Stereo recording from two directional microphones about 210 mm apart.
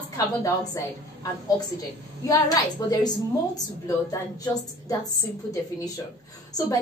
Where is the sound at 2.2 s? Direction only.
15° left (ahead or behind).